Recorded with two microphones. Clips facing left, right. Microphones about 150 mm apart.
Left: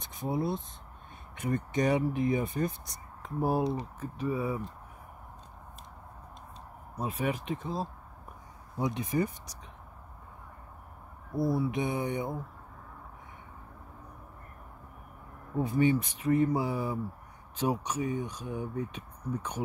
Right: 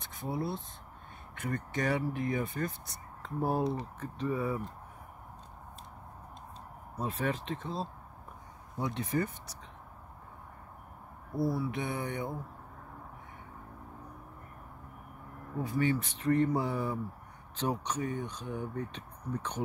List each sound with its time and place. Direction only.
0.0 s speech: 15° left (ahead or behind)
7.0 s speech: 10° left (ahead or behind)
11.3 s speech: 20° left (ahead or behind)
15.6 s speech: 20° left (ahead or behind)